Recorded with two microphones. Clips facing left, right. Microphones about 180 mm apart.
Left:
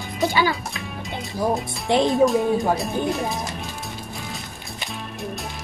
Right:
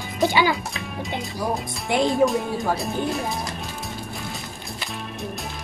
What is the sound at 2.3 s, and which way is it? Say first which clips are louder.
Speech: left 4 dB; centre (ahead or behind).